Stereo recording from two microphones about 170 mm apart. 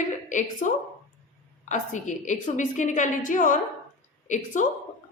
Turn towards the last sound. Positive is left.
turn(degrees=45)  # may be behind; listen again after turning